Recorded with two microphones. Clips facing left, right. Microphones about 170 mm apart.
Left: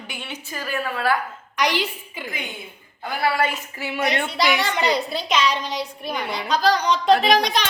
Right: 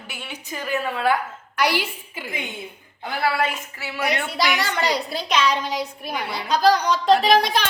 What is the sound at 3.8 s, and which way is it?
Speech, 20° left (ahead or behind).